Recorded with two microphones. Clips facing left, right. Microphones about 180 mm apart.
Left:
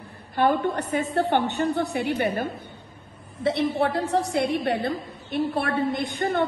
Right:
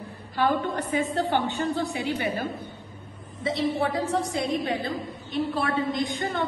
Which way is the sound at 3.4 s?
60° left (ahead or behind).